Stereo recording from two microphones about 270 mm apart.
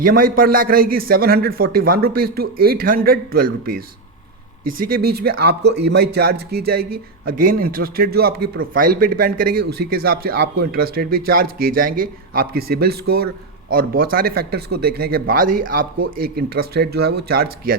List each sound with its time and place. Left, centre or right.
0.0 s a man's voice: right